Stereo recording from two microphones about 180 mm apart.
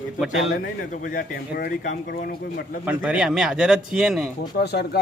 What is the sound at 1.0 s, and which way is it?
A man's voice, 60° left (ahead or behind).